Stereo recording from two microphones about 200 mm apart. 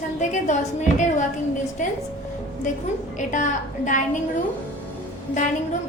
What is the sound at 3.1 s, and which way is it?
Speech, 40° left (ahead or behind).